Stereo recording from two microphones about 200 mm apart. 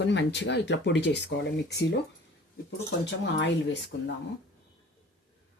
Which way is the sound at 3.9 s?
60° left (ahead or behind).